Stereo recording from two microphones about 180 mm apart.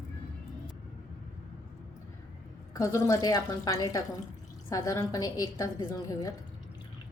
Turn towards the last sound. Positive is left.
turn(degrees=20)  # may be behind; listen again after turning